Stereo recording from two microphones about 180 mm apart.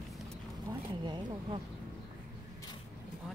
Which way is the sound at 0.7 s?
25° right (ahead or behind).